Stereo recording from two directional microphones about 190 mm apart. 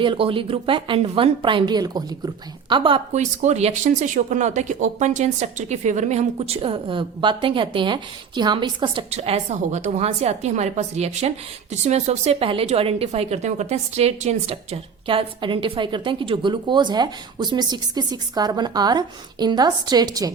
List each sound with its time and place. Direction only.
0.0 s a woman's voice: 30° right (ahead or behind)